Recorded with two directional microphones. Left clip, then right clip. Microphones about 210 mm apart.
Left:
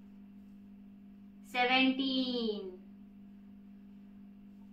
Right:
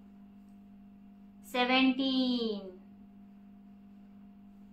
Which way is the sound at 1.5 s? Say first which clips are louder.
Right 1 dB; 40° right (ahead or behind).